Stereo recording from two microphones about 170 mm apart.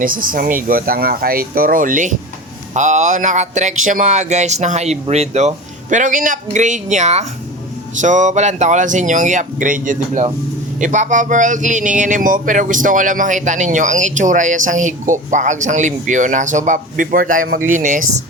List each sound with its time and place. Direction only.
0.0 s a man's voice: 55° right (ahead or behind)